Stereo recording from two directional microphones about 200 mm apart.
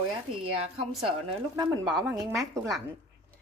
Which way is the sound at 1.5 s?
20° right (ahead or behind).